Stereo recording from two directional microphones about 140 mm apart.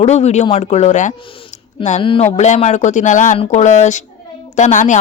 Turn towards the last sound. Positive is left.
turn(degrees=60)  # may be behind; listen again after turning